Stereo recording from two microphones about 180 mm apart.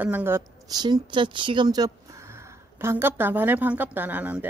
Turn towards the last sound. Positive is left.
turn(degrees=-10)  # may be behind; listen again after turning